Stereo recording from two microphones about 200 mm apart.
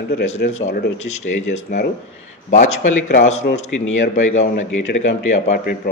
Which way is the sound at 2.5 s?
35° left (ahead or behind).